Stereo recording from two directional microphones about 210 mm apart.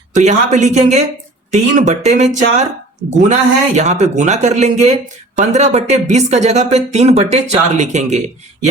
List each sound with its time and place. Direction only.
0.1 s speech: 35° right (ahead or behind)